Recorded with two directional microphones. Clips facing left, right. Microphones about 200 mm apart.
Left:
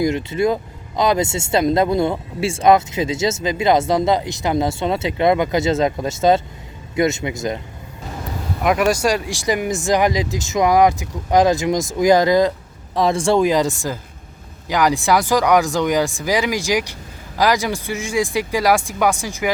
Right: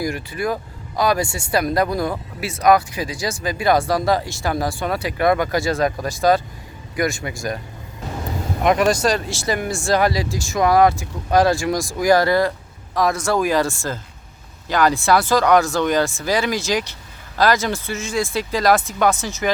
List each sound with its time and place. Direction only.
0.0 s speech: 25° left (ahead or behind)
8.6 s speech: 5° left (ahead or behind)